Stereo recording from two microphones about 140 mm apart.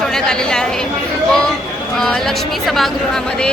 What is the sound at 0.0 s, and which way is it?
Speech, 5° left (ahead or behind).